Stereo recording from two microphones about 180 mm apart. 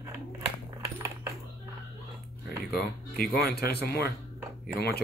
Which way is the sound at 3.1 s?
60° left (ahead or behind).